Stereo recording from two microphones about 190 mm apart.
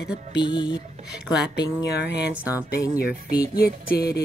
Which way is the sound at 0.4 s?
25° left (ahead or behind).